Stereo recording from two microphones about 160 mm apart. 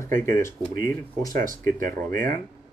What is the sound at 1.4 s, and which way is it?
Speech, 55° right (ahead or behind).